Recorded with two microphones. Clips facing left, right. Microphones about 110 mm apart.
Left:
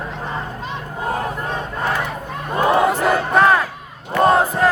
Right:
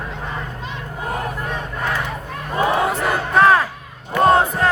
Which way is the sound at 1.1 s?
30° left (ahead or behind).